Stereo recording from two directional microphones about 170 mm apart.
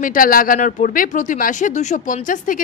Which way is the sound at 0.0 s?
55° left (ahead or behind).